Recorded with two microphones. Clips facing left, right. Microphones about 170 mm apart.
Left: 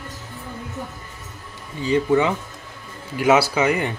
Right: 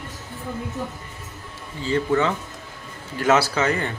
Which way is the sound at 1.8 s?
15° left (ahead or behind).